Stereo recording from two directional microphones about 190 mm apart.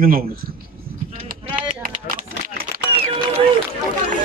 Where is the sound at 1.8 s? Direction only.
45° right (ahead or behind).